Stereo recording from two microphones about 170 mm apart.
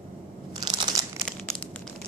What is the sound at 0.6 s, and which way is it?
Crunch, 20° right (ahead or behind).